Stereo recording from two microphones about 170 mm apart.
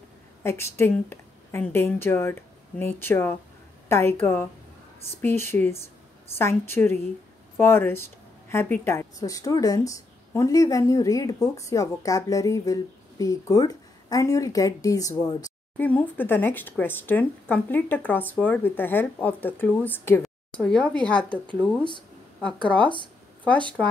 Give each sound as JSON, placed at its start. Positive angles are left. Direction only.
{"t": 0.4, "sound": "a woman's voice", "side_deg": 15}